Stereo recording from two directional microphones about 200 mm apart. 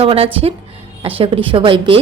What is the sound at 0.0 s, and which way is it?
A woman's voice, 30° right (ahead or behind).